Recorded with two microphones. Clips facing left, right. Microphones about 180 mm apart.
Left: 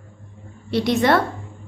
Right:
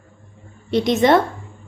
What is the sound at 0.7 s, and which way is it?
Speech, 20° right (ahead or behind).